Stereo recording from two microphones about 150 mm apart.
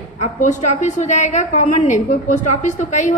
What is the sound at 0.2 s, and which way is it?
A woman's voice, 55° left (ahead or behind).